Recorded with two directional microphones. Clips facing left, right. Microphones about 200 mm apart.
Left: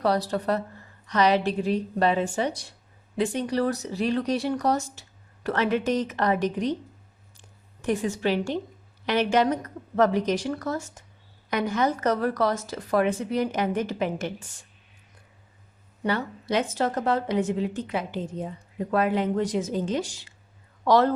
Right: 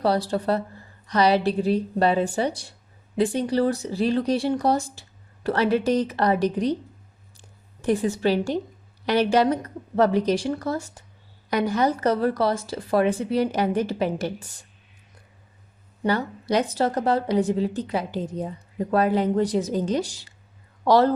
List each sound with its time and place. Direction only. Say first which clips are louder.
0.0 s speech: right 2 dB; 30° right (ahead or behind)
7.3 s a sound: right 3 dB; 35° right (ahead or behind)
9.0 s speech: right 3 dB; 35° right (ahead or behind)
16.0 s speech: right 3 dB; 40° right (ahead or behind)